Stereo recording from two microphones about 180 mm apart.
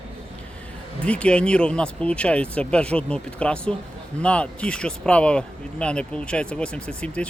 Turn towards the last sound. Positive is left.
turn(degrees=5)  # may be behind; listen again after turning